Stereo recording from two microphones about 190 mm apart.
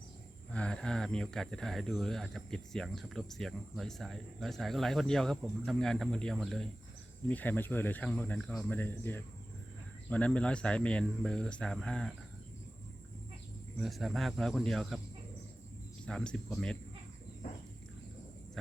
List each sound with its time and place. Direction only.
0.5 s speech: 5° left (ahead or behind)
13.7 s speech: centre (ahead or behind)
16.0 s speech: 5° left (ahead or behind)